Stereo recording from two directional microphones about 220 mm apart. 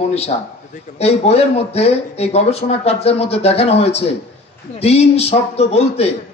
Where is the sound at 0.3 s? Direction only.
35° left (ahead or behind).